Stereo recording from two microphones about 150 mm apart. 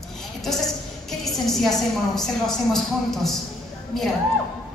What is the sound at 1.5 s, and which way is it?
A woman's voice, centre (ahead or behind).